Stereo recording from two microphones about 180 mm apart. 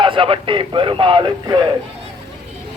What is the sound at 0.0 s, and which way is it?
Speech, 30° right (ahead or behind).